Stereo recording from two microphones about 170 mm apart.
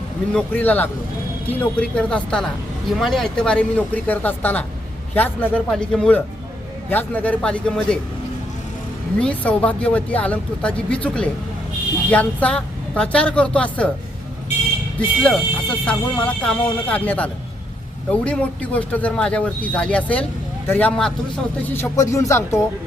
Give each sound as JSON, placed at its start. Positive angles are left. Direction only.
{"t": 0.3, "sound": "speech", "side_deg": 10}
{"t": 9.2, "sound": "speech", "side_deg": 10}
{"t": 14.9, "sound": "speech", "side_deg": 5}